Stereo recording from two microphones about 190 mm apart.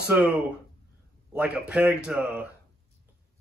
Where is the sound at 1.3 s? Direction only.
5° right (ahead or behind).